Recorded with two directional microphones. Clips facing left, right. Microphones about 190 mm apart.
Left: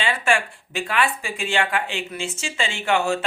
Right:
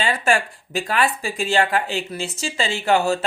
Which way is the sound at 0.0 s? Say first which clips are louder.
Right 2 dB; 40° right (ahead or behind).